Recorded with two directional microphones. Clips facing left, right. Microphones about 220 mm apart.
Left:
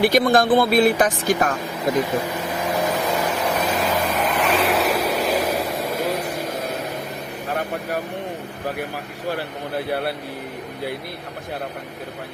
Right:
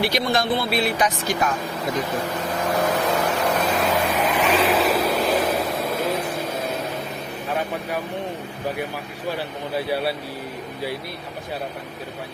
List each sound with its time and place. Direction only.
0.0 s speech: 50° left (ahead or behind)
2.7 s vehicle: centre (ahead or behind)